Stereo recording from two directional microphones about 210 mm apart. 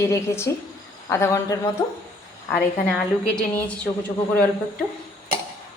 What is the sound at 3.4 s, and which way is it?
Speech, 5° left (ahead or behind).